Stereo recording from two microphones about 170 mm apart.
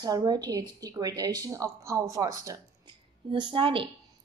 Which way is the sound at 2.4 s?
25° right (ahead or behind).